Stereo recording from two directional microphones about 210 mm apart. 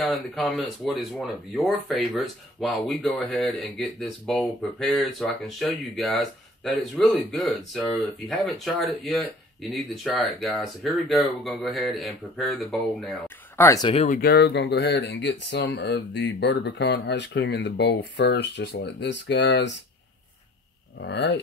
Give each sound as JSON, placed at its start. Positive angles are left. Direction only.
{"t": 0.0, "sound": "speech", "side_deg": 0}
{"t": 13.6, "sound": "speech", "side_deg": 15}
{"t": 13.9, "sound": "speech", "side_deg": 40}
{"t": 21.0, "sound": "speech", "side_deg": 55}